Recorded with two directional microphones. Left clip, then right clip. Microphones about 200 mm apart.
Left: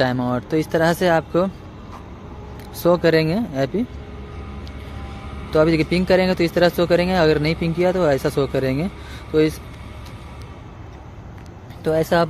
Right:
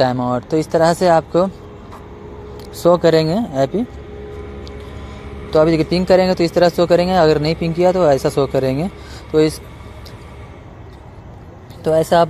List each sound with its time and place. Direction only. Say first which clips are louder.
0.0 s speech: right 4 dB; 5° right (ahead or behind)
2.8 s speech: right 4 dB; 10° right (ahead or behind)
5.5 s speech: right 3 dB; 5° right (ahead or behind)
11.8 s speech: right 5 dB; 5° right (ahead or behind)